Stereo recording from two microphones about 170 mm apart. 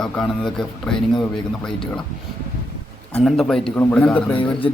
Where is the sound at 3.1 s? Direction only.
5° left (ahead or behind).